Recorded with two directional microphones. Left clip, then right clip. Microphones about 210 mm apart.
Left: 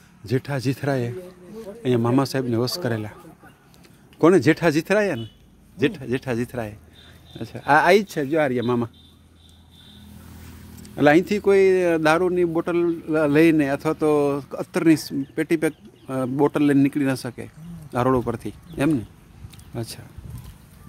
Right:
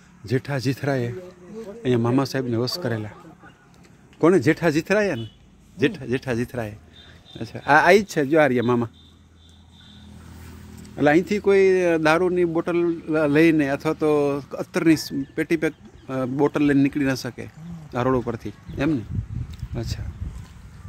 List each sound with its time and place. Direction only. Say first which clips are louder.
0.2 s a man's voice: even; 5° left (ahead or behind)
4.2 s a man's voice: left 2 dB; 10° left (ahead or behind)
8.2 s speech: right 3 dB; 20° right (ahead or behind)
8.6 s a man's voice: right 1 dB; 5° right (ahead or behind)
10.8 s a man's voice: left 2 dB; 15° left (ahead or behind)